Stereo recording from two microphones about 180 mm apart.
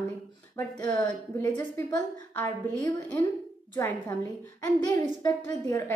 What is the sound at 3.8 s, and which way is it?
Speech, 15° left (ahead or behind).